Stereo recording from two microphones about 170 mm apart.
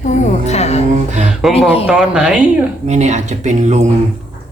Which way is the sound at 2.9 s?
40° right (ahead or behind).